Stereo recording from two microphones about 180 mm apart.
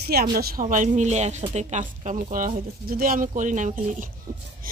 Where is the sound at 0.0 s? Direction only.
60° right (ahead or behind).